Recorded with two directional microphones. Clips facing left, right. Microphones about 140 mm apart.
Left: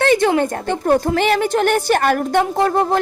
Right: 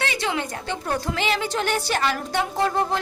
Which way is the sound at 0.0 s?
50° left (ahead or behind).